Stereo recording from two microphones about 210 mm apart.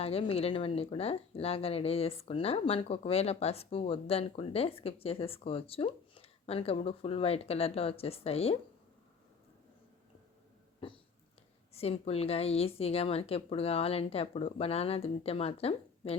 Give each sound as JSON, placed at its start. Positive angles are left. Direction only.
{"t": 0.0, "sound": "speech", "side_deg": 25}
{"t": 11.7, "sound": "speech", "side_deg": 30}